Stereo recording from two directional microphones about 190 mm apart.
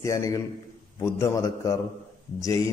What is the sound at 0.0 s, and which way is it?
Speech, 15° left (ahead or behind).